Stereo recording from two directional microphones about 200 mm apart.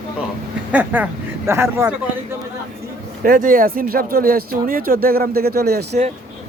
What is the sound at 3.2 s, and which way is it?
Speech, 45° right (ahead or behind).